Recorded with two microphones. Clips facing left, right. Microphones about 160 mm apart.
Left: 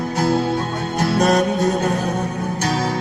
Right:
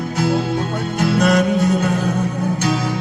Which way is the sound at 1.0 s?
40° left (ahead or behind).